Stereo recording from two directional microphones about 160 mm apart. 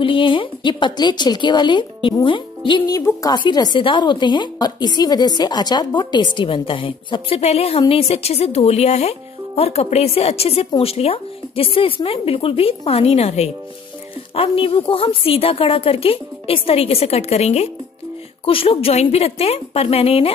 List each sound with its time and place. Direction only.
0.0 s speech: 30° left (ahead or behind)